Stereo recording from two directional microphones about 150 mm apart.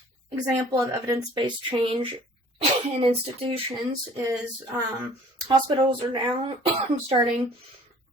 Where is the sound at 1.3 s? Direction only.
30° right (ahead or behind).